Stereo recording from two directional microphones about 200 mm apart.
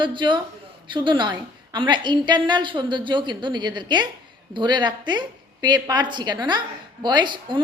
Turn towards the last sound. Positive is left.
turn(degrees=-20)  # may be behind; listen again after turning